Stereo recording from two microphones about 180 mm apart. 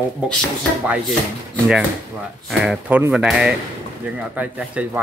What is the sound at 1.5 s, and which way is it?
Speech, centre (ahead or behind).